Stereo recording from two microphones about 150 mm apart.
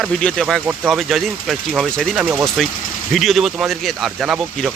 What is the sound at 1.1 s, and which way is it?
A man's voice, centre (ahead or behind).